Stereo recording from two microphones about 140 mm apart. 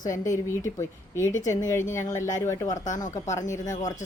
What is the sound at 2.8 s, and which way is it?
Speech, 65° left (ahead or behind).